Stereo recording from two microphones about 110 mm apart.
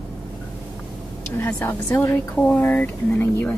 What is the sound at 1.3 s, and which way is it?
Speech, 20° left (ahead or behind).